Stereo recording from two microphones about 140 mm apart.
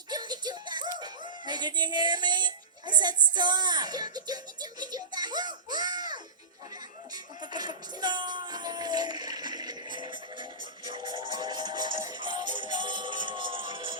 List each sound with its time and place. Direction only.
0.1 s music: 30° right (ahead or behind)
3.2 s speech: 30° right (ahead or behind)
12.0 s music: 35° right (ahead or behind)